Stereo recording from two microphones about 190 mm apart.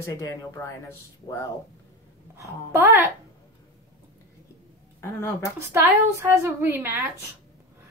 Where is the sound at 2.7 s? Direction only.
10° right (ahead or behind).